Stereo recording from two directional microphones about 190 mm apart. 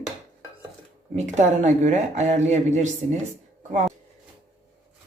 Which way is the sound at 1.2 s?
40° right (ahead or behind).